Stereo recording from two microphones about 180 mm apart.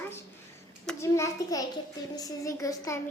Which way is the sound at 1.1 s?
20° left (ahead or behind).